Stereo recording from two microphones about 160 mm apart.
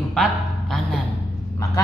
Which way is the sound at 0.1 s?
Centre (ahead or behind).